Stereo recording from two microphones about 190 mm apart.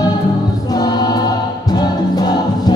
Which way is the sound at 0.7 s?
20° left (ahead or behind).